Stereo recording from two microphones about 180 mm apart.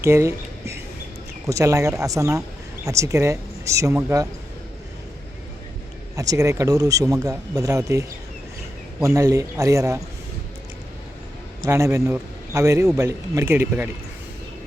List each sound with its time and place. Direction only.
0.0 s a sound: 15° right (ahead or behind)
1.5 s speech: 15° right (ahead or behind)
6.1 s speech: 20° right (ahead or behind)
11.6 s a man's voice: 15° right (ahead or behind)